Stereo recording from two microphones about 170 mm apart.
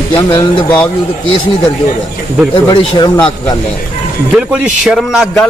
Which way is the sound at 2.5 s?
30° left (ahead or behind).